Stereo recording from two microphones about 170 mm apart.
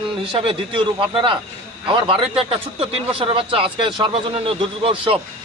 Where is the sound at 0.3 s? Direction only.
30° right (ahead or behind).